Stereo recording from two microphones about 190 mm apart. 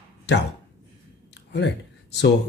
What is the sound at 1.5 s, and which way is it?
Speech, 65° left (ahead or behind).